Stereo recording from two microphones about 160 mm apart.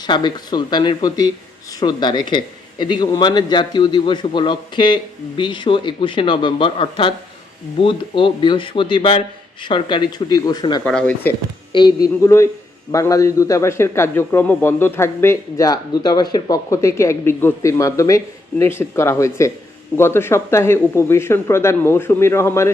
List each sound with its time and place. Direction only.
0.0 s a man's voice: 25° left (ahead or behind)
10.8 s speech: 5° left (ahead or behind)
11.7 s a man's voice: 30° left (ahead or behind)